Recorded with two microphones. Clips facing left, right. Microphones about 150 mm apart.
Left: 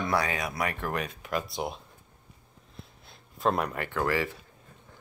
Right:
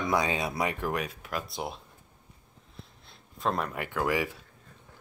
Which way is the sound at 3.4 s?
5° left (ahead or behind).